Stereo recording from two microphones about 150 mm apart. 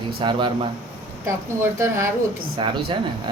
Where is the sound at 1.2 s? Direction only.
20° right (ahead or behind).